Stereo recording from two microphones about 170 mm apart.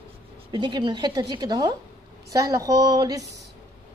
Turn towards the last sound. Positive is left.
turn(degrees=-20)  # may be behind; listen again after turning